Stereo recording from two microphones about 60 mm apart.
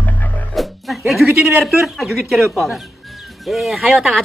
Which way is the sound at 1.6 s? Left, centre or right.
Centre.